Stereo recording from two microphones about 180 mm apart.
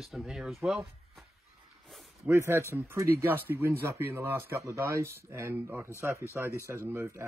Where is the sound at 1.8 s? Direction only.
Centre (ahead or behind).